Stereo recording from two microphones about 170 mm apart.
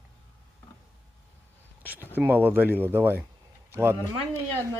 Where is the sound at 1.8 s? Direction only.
10° right (ahead or behind).